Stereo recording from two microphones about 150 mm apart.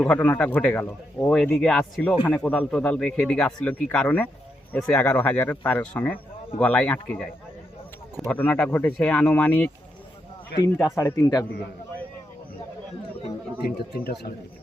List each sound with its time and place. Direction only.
0.0 s speech: 10° left (ahead or behind)
8.3 s speech: 10° left (ahead or behind)
10.8 s speech: 15° left (ahead or behind)
13.7 s speech: 90° left